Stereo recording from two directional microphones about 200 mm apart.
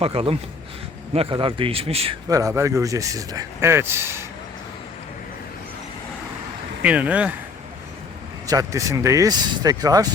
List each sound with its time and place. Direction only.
0.0 s a man's voice: 30° right (ahead or behind)
2.3 s speech: 15° right (ahead or behind)
6.8 s speech: 5° right (ahead or behind)
8.4 s speech: 15° right (ahead or behind)